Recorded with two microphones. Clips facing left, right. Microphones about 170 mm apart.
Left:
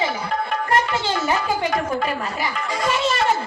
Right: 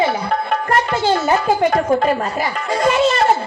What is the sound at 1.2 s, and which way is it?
A woman's voice, 45° right (ahead or behind).